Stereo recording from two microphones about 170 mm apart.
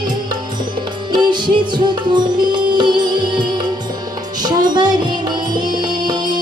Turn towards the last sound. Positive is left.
turn(degrees=-25)  # may be behind; listen again after turning